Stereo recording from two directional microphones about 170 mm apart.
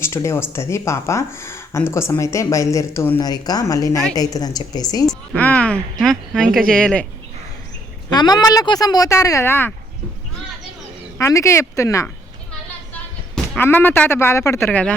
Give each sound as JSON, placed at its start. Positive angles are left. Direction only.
{"t": 0.0, "sound": "speech", "side_deg": 15}
{"t": 5.0, "sound": "speech", "side_deg": 5}
{"t": 8.1, "sound": "speech", "side_deg": 25}
{"t": 11.2, "sound": "speech", "side_deg": 20}
{"t": 12.9, "sound": "a woman's voice", "side_deg": 5}